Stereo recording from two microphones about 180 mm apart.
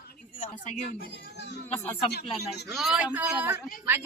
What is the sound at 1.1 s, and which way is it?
Speech, 70° left (ahead or behind).